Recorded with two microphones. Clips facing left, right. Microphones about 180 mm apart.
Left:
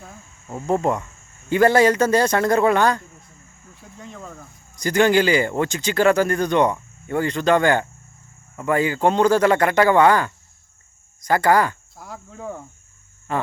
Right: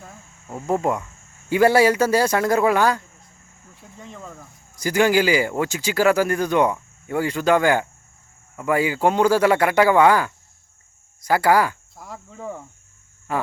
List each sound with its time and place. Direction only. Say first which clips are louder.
0.0 s cricket: left 1 dB; centre (ahead or behind)
1.5 s speech: even; 10° right (ahead or behind)
13.3 s a sound: even; 5° right (ahead or behind)